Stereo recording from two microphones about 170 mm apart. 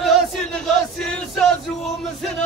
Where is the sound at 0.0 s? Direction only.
Centre (ahead or behind).